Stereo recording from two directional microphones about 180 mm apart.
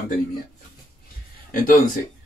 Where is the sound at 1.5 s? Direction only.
50° left (ahead or behind).